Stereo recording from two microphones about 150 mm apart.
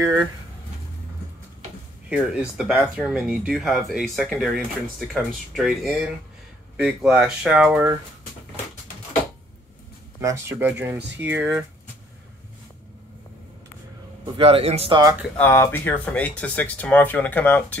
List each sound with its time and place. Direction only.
2.0 s speech: 10° right (ahead or behind)
10.2 s speech: 15° right (ahead or behind)
14.2 s a man's voice: 35° right (ahead or behind)
15.3 s speech: 15° left (ahead or behind)